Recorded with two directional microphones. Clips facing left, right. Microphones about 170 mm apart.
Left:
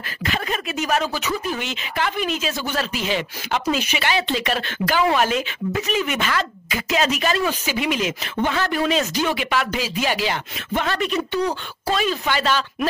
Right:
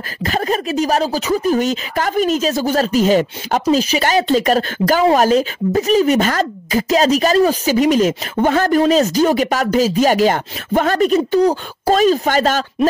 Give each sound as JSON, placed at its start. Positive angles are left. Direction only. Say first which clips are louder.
{"t": 0.2, "sound": "speech", "louder": "right 7 dB", "side_deg": -40}